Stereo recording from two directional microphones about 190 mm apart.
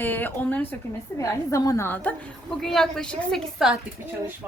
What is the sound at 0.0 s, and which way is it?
Speech, 10° left (ahead or behind).